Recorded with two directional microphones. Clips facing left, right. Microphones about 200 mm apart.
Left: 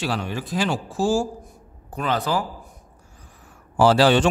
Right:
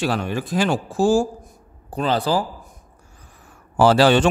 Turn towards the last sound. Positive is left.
turn(degrees=-60)  # may be behind; listen again after turning